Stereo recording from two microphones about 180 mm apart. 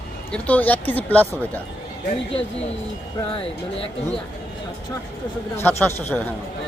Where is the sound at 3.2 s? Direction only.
30° left (ahead or behind).